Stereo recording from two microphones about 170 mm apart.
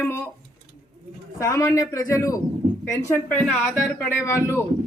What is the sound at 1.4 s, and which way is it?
A man's voice, 20° left (ahead or behind).